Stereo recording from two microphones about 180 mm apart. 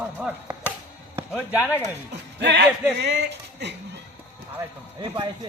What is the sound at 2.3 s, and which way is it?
A man's voice, 70° right (ahead or behind).